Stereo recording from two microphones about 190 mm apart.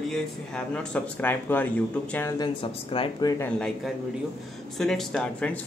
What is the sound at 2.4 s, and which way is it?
Speech, 25° left (ahead or behind).